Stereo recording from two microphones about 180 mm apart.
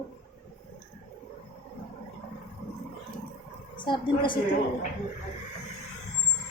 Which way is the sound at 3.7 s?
25° left (ahead or behind).